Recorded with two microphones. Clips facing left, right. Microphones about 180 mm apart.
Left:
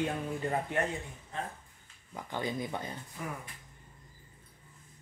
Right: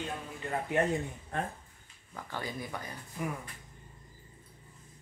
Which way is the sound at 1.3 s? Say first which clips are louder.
Right 4 dB; 55° right (ahead or behind).